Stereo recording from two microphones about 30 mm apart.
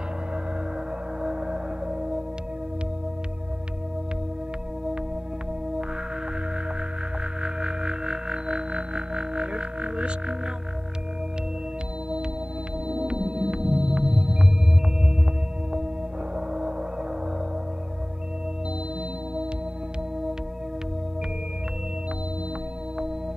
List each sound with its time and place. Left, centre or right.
1.2 s music: right
7.4 s music: right
12.8 s ambient music: right
13.4 s music: right
16.3 s gong: right